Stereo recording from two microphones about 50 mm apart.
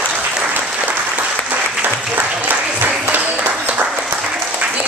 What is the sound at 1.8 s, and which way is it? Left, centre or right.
Applause, right.